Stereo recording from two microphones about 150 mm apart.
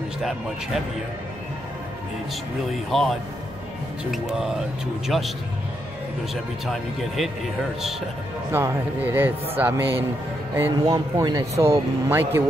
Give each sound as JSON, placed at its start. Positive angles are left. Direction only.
{"t": 0.2, "sound": "speech", "side_deg": 0}
{"t": 2.7, "sound": "speech", "side_deg": 0}
{"t": 6.3, "sound": "speech", "side_deg": 0}
{"t": 8.5, "sound": "speech", "side_deg": -15}